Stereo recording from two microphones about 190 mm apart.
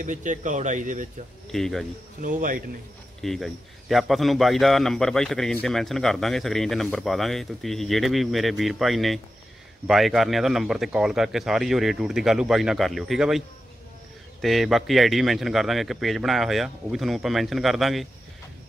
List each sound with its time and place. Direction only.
0.0 s speech: 40° right (ahead or behind)
1.5 s speech: centre (ahead or behind)
2.2 s speech: 45° right (ahead or behind)
3.2 s speech: centre (ahead or behind)
14.4 s speech: centre (ahead or behind)